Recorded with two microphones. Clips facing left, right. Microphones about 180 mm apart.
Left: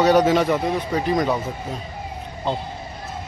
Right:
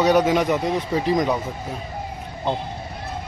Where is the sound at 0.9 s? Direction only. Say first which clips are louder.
Even; 25° right (ahead or behind).